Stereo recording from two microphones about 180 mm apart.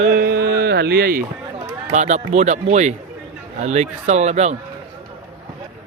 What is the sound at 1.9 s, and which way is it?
Speech, 40° right (ahead or behind).